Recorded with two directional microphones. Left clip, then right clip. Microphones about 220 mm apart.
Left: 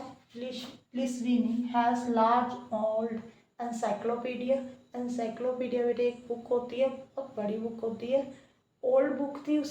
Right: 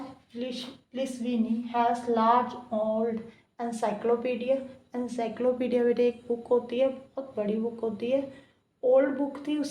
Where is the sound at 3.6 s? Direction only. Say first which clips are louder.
Right 2 dB; 45° right (ahead or behind).